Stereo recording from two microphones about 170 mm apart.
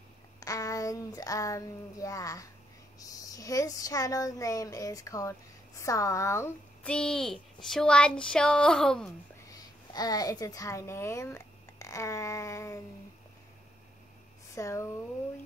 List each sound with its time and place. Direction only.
0.4 s a sound: 20° left (ahead or behind)
3.0 s speech: 20° left (ahead or behind); by 9.1 s 5° left (ahead or behind)
9.5 s a child's voice: 20° left (ahead or behind)
14.5 s speech: 15° left (ahead or behind)